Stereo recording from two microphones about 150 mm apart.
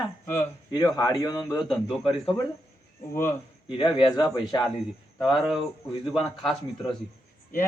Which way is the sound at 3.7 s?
35° left (ahead or behind).